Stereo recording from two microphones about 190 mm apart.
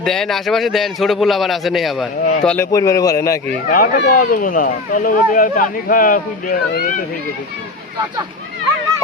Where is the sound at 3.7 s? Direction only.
45° left (ahead or behind).